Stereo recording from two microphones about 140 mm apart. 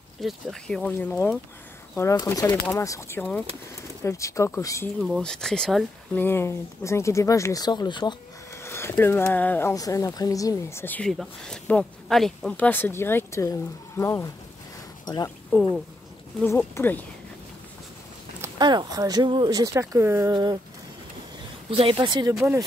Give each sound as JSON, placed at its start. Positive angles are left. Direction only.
{"t": 0.2, "sound": "speech", "side_deg": 0}
{"t": 5.2, "sound": "speech", "side_deg": 5}
{"t": 6.1, "sound": "speech", "side_deg": 15}
{"t": 8.6, "sound": "speech", "side_deg": 15}
{"t": 11.1, "sound": "speech", "side_deg": 5}
{"t": 16.4, "sound": "speech", "side_deg": 15}
{"t": 18.6, "sound": "speech", "side_deg": -30}
{"t": 21.6, "sound": "speech", "side_deg": -40}